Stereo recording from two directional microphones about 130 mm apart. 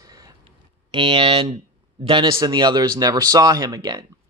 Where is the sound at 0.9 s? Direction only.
40° right (ahead or behind).